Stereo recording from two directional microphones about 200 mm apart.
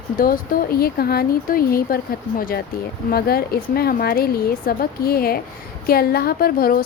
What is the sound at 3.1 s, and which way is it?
Speech, 50° left (ahead or behind).